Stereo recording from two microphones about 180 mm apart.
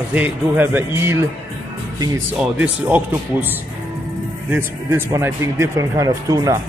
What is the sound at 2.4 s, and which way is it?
Music, 10° right (ahead or behind).